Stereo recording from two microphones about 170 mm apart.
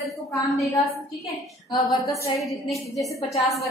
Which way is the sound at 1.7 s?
Centre (ahead or behind).